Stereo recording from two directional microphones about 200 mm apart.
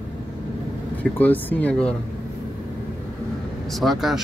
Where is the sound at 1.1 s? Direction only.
10° left (ahead or behind).